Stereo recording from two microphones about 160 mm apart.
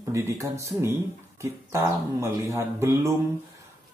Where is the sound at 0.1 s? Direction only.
15° right (ahead or behind).